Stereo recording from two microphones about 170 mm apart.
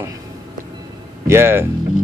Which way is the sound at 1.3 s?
15° right (ahead or behind).